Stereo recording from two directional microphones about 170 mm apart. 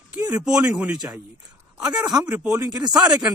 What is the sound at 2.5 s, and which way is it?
Speech, 20° right (ahead or behind).